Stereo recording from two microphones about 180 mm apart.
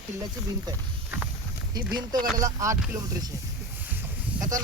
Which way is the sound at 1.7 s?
20° right (ahead or behind).